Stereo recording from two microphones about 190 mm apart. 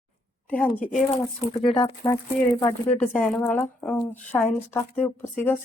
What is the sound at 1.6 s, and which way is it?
Speech, 25° left (ahead or behind).